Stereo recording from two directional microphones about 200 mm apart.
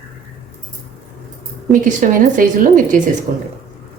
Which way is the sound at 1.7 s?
40° right (ahead or behind).